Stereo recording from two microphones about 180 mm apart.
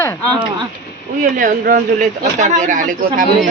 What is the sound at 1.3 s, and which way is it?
A woman's voice, 50° right (ahead or behind).